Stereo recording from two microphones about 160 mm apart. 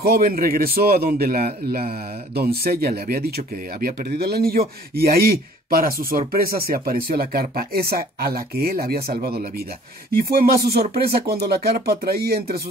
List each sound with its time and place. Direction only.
0.0 s speech: 70° right (ahead or behind)